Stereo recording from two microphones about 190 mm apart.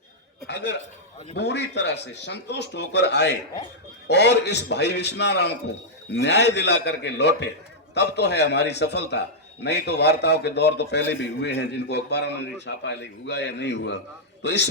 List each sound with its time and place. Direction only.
0.4 s a man's voice: 65° left (ahead or behind)